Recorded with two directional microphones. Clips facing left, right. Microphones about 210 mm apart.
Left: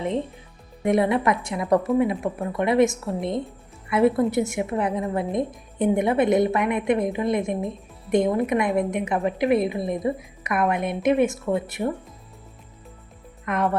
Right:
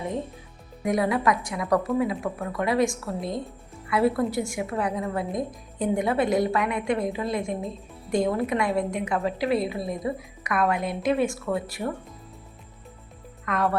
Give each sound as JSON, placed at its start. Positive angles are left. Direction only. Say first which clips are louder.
{"t": 0.9, "sound": "a woman's voice", "louder": "left 3 dB", "side_deg": 25}
{"t": 13.4, "sound": "speech", "louder": "left 2 dB", "side_deg": 20}